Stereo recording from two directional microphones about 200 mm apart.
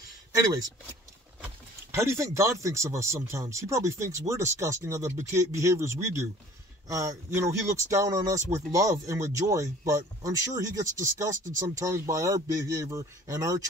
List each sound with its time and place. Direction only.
1.9 s speech: 15° right (ahead or behind)